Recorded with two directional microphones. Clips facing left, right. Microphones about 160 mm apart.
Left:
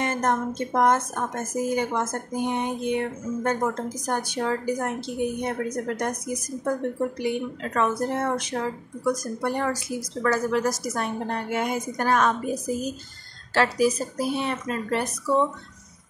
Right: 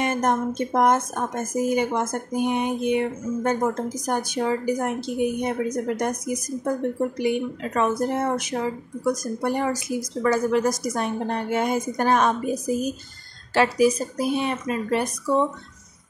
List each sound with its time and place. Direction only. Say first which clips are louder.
0.0 s a woman's voice: right 2 dB; 15° right (ahead or behind)